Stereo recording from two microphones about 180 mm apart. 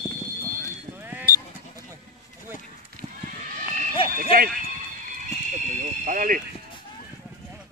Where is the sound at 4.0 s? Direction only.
30° left (ahead or behind).